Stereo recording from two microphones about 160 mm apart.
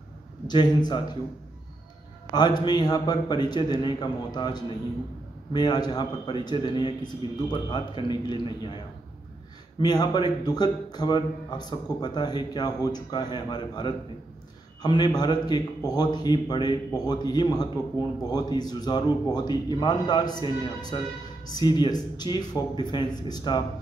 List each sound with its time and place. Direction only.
0.5 s a man's voice: 25° left (ahead or behind)
2.3 s a man's voice: 25° left (ahead or behind)
7.2 s a man's voice: 25° right (ahead or behind)
7.7 s a man's voice: 25° left (ahead or behind)